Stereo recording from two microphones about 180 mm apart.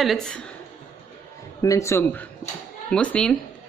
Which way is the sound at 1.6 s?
15° left (ahead or behind).